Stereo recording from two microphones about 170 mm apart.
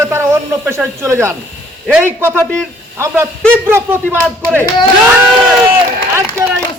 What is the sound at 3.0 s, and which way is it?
A man's voice, 15° right (ahead or behind).